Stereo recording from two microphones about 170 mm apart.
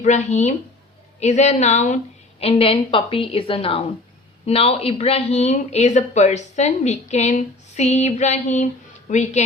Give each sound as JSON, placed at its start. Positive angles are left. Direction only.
{"t": 0.0, "sound": "speech", "side_deg": 45}